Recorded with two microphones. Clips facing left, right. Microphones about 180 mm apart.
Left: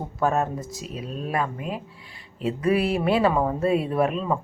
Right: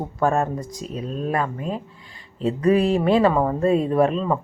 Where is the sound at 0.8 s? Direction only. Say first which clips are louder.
Right 4 dB; 40° right (ahead or behind).